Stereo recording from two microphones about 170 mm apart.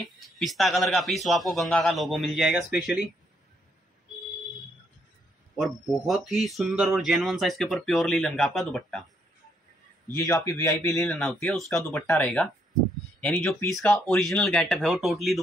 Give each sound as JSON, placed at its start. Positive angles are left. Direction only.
{"t": 0.0, "sound": "speech", "side_deg": 0}
{"t": 5.6, "sound": "speech", "side_deg": 0}
{"t": 10.1, "sound": "speech", "side_deg": 15}
{"t": 10.9, "sound": "speech", "side_deg": 5}